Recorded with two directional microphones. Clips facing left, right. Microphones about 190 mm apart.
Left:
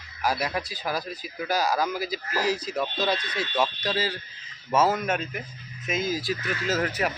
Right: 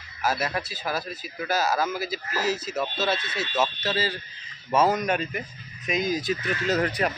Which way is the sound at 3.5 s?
5° right (ahead or behind).